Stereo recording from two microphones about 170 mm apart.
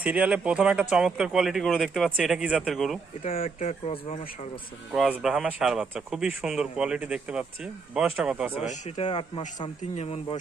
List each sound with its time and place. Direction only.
0.0 s speech: 5° right (ahead or behind)
3.7 s speech: 35° left (ahead or behind)
4.9 s speech: 5° right (ahead or behind)
8.5 s speech: 35° left (ahead or behind)